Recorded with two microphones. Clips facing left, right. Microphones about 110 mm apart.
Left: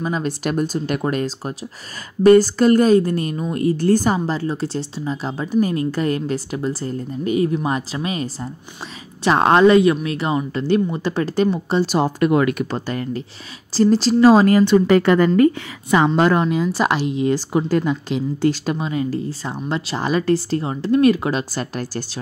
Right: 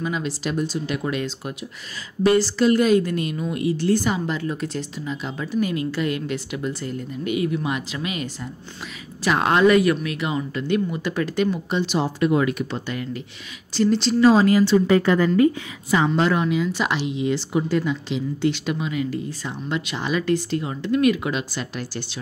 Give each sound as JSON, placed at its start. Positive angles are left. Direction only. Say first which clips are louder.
{"t": 0.0, "sound": "speech", "louder": "left 3 dB", "side_deg": 40}
{"t": 0.4, "sound": "speech", "louder": "left 4 dB", "side_deg": 50}
{"t": 12.8, "sound": "speech", "louder": "left 4 dB", "side_deg": 40}
{"t": 16.2, "sound": "speech", "louder": "left 4 dB", "side_deg": 45}